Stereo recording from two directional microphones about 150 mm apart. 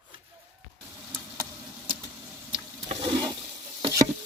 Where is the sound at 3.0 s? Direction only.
25° right (ahead or behind).